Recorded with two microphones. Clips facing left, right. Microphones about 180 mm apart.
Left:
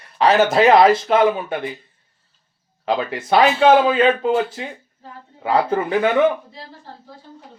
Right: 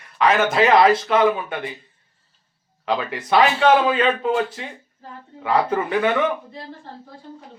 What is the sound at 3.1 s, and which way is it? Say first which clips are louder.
Speech: left 2 dB; 40° left (ahead or behind).